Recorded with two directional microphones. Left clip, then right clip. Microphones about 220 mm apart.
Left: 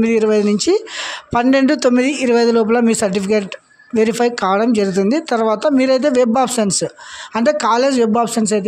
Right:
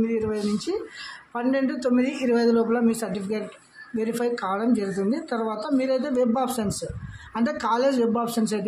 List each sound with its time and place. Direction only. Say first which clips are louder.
0.0 s a woman's voice: left 12 dB; 40° left (ahead or behind)